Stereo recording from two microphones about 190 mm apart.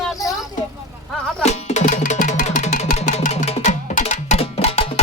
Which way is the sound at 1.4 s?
35° left (ahead or behind).